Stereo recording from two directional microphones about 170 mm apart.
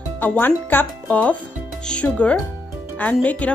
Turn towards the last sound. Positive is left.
turn(degrees=10)  # may be behind; listen again after turning